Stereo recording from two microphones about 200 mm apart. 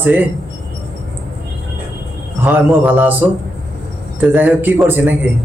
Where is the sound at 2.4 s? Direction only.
10° right (ahead or behind).